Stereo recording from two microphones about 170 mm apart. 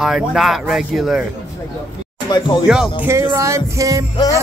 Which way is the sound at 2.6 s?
5° right (ahead or behind).